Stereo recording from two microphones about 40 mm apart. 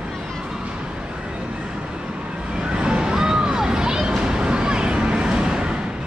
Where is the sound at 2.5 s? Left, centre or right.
Right.